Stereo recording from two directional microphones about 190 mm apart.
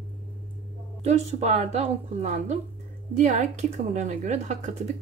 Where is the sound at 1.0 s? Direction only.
35° right (ahead or behind).